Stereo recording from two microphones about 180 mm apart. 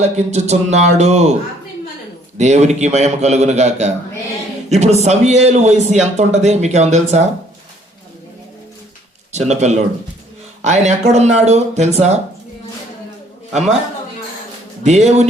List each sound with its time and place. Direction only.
0.0 s speech: 40° right (ahead or behind)
2.4 s speech: 40° right (ahead or behind)
9.3 s speech: 40° right (ahead or behind)
13.5 s speech: centre (ahead or behind)
14.8 s speech: 40° right (ahead or behind)